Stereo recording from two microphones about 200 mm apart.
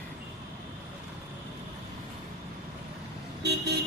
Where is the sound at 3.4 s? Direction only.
55° right (ahead or behind).